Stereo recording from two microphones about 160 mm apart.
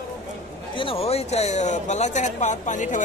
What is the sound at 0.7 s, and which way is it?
Speech, 35° left (ahead or behind).